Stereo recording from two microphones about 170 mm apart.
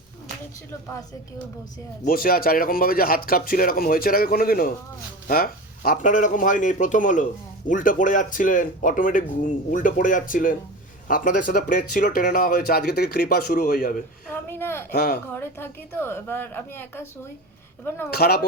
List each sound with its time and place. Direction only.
2.0 s speech: 60° left (ahead or behind)
12.3 s speech: 55° left (ahead or behind)
14.3 s a woman's voice: 10° left (ahead or behind)
14.9 s speech: 70° left (ahead or behind)
15.3 s a woman's voice: 15° left (ahead or behind)
18.1 s speech: 65° left (ahead or behind)